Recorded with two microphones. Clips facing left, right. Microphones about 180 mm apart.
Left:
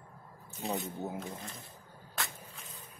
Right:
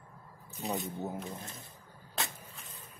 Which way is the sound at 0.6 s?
15° right (ahead or behind).